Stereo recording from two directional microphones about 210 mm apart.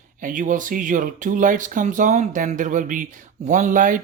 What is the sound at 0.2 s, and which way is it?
Speech, 40° right (ahead or behind).